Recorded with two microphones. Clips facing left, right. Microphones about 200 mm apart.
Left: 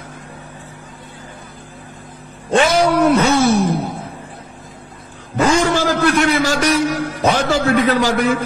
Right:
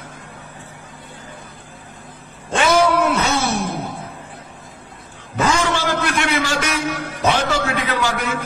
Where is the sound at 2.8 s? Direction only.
40° left (ahead or behind).